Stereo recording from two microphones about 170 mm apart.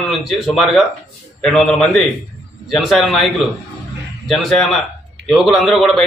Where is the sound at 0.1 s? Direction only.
Centre (ahead or behind).